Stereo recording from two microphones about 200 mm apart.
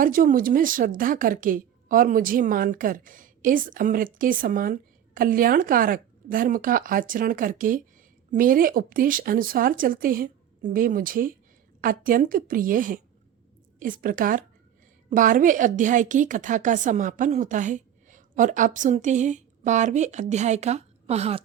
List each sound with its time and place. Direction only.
0.0 s a woman's voice: 45° right (ahead or behind)